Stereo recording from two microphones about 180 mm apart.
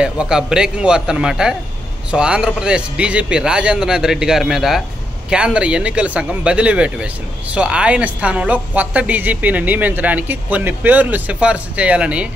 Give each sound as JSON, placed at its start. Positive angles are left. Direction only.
{"t": 0.0, "sound": "a man's voice", "side_deg": -5}